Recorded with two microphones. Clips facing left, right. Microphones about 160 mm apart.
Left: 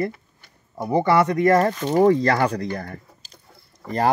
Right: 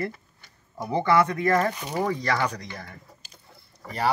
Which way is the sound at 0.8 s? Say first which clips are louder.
Left 6 dB; 15° left (ahead or behind).